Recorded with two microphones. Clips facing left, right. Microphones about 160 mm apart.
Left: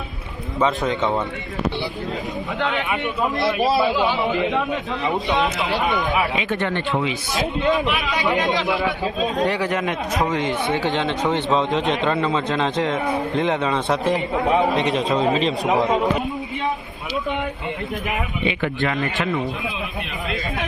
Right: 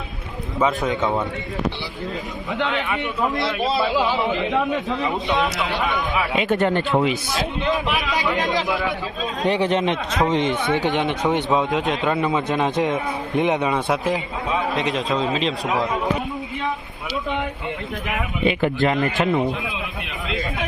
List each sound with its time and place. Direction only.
0.6 s a man's voice: centre (ahead or behind)
2.7 s speech: 20° left (ahead or behind)
3.9 s a man's voice: centre (ahead or behind)
6.3 s speech: 40° right (ahead or behind)
7.9 s a man's voice: centre (ahead or behind)
8.2 s speech: 20° left (ahead or behind)
9.4 s a man's voice: 20° right (ahead or behind)
11.9 s a man's voice: centre (ahead or behind)
12.2 s a man's voice: 15° right (ahead or behind)
13.8 s a man's voice: 5° right (ahead or behind)
15.7 s speech: 20° left (ahead or behind)
18.4 s speech: 40° right (ahead or behind)